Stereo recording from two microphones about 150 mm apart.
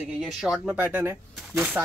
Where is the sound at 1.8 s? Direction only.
Centre (ahead or behind).